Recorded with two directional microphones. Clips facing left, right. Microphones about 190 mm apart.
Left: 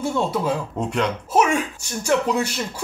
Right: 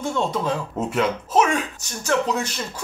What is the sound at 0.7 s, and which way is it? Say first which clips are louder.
Speech: right 1 dB; 5° right (ahead or behind).